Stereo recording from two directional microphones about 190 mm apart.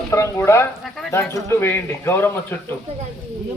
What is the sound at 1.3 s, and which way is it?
A man's voice, 10° left (ahead or behind).